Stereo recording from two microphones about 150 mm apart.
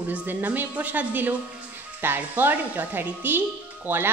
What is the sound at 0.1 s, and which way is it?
A woman's voice, 10° right (ahead or behind).